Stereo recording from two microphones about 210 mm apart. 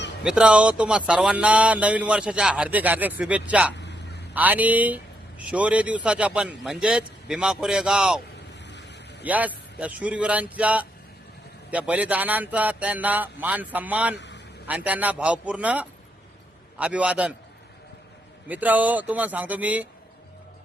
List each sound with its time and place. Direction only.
0.2 s speech: 5° right (ahead or behind)
3.8 s a sound: 55° left (ahead or behind)
4.4 s speech: 10° right (ahead or behind)
8.6 s vehicle: 55° left (ahead or behind)
9.2 s speech: 5° right (ahead or behind)
14.2 s vehicle: 55° left (ahead or behind)
14.7 s speech: 5° right (ahead or behind)
18.4 s speech: 10° right (ahead or behind)